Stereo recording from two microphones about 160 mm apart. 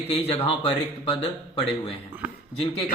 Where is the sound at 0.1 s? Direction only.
40° left (ahead or behind).